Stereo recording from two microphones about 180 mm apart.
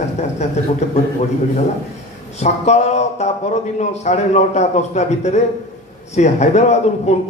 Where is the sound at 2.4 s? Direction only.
40° left (ahead or behind).